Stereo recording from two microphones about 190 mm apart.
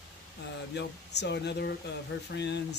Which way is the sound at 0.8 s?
65° left (ahead or behind).